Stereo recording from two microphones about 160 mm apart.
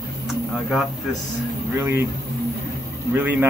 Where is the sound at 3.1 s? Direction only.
10° right (ahead or behind).